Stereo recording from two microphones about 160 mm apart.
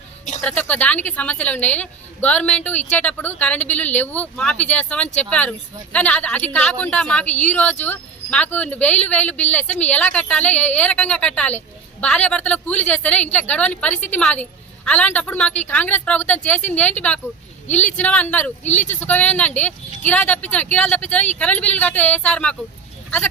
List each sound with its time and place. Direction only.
0.4 s a woman's voice: 10° left (ahead or behind)